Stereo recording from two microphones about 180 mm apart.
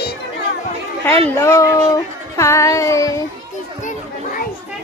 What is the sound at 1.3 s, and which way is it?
Music, 15° left (ahead or behind).